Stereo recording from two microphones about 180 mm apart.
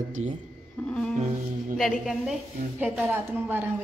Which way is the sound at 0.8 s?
5° left (ahead or behind).